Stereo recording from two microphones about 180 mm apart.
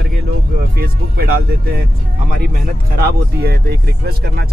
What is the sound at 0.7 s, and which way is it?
Speech, 60° right (ahead or behind).